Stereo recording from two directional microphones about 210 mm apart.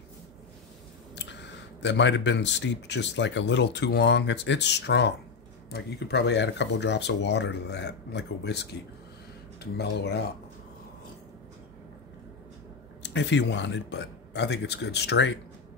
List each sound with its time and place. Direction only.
1.1 s speech: 55° left (ahead or behind)
13.0 s speech: 60° left (ahead or behind)